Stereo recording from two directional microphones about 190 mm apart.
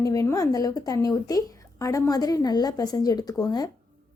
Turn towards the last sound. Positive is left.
turn(degrees=20)  # may be behind; listen again after turning